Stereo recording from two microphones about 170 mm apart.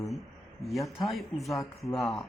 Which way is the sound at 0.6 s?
Centre (ahead or behind).